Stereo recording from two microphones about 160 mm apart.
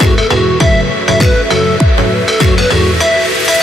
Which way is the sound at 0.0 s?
Centre (ahead or behind).